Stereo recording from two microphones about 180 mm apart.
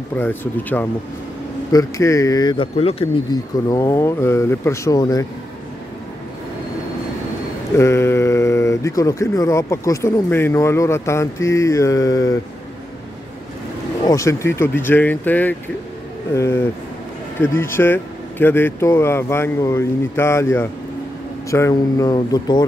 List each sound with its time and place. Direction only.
0.1 s a man's voice: 10° left (ahead or behind); by 3.3 s 35° left (ahead or behind)
3.6 s speech: 15° left (ahead or behind)
7.7 s speech: 15° left (ahead or behind)
14.0 s a man's voice: 15° left (ahead or behind)